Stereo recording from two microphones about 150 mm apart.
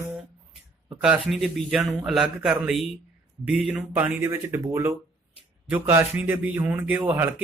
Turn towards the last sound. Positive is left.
turn(degrees=-15)  # may be behind; listen again after turning